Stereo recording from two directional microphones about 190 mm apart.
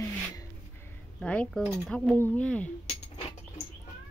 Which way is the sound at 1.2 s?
5° left (ahead or behind).